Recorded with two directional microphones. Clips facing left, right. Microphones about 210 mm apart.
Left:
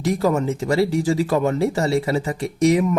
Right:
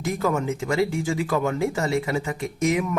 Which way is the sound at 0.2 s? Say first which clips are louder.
Left 4 dB; 35° left (ahead or behind).